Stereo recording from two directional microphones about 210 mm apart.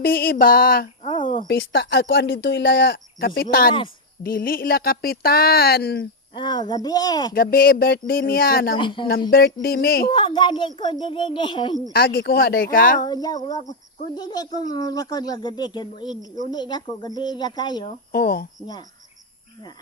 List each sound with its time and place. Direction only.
0.0 s speech: 45° left (ahead or behind)
1.0 s a sound: 25° left (ahead or behind)
1.5 s speech: 50° left (ahead or behind)
6.3 s speech: 20° left (ahead or behind)
7.3 s speech: 45° left (ahead or behind)
8.8 s speech: 25° left (ahead or behind)
9.3 s speech: 45° left (ahead or behind)
10.1 s speech: 25° left (ahead or behind)
11.9 s speech: 45° left (ahead or behind)
13.0 s a sound: 20° left (ahead or behind)
14.2 s speech: 20° left (ahead or behind)
18.1 s speech: 45° left (ahead or behind)